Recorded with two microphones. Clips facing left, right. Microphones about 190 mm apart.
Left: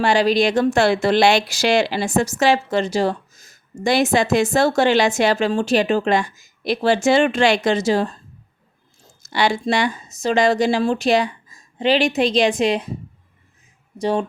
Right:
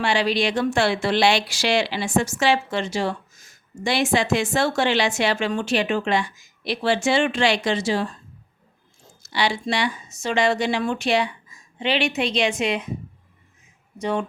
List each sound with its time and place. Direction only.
0.0 s speech: 40° left (ahead or behind)
9.2 s speech: 50° left (ahead or behind)
14.0 s speech: 35° left (ahead or behind)